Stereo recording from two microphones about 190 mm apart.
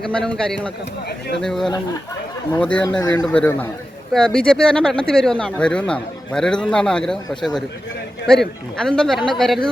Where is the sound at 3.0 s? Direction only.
20° left (ahead or behind).